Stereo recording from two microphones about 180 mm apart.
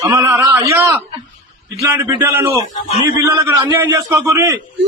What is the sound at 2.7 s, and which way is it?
Speech, 40° left (ahead or behind).